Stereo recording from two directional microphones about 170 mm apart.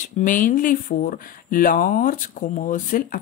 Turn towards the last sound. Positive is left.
turn(degrees=50)  # may be behind; listen again after turning